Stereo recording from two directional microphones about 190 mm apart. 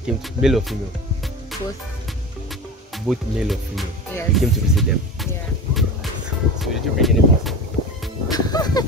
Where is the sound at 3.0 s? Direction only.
Centre (ahead or behind).